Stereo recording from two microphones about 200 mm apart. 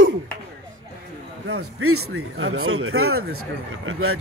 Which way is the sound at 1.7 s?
90° right.